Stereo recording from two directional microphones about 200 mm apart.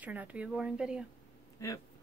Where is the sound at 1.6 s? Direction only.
15° left (ahead or behind).